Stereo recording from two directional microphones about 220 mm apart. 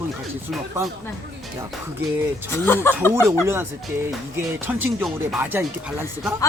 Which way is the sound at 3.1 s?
10° right (ahead or behind).